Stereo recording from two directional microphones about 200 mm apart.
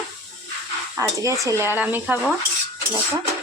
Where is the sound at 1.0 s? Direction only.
15° right (ahead or behind).